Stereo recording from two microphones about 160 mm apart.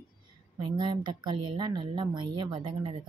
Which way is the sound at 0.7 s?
30° right (ahead or behind).